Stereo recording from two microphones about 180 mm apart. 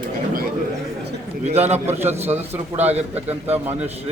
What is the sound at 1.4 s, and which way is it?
Speech, 35° right (ahead or behind).